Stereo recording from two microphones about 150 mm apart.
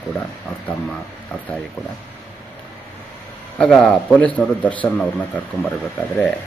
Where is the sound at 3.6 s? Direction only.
5° left (ahead or behind).